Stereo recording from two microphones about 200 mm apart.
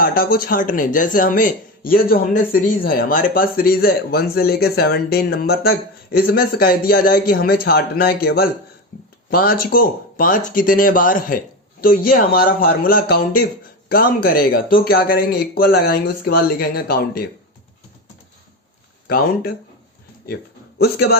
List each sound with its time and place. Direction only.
0.0 s speech: 50° left (ahead or behind)
19.0 s speech: 50° left (ahead or behind)
20.7 s speech: 50° left (ahead or behind)